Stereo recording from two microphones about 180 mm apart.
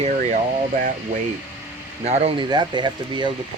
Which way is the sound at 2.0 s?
35° right (ahead or behind).